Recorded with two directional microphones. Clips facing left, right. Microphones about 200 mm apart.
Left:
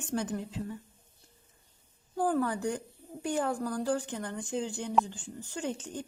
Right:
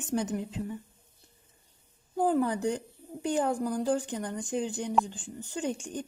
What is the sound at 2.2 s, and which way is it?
Speech, 20° right (ahead or behind).